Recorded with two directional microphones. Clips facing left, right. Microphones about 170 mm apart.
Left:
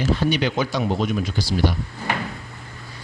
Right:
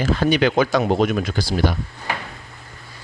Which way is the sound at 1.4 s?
50° right (ahead or behind).